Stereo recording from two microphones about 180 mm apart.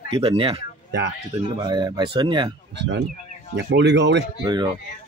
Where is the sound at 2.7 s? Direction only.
75° right (ahead or behind).